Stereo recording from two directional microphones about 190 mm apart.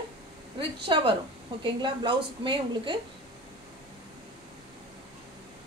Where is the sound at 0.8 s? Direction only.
25° right (ahead or behind).